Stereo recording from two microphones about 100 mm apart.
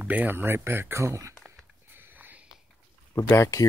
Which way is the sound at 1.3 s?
5° left (ahead or behind).